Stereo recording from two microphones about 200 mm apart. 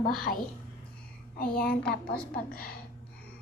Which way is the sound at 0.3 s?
45° left (ahead or behind).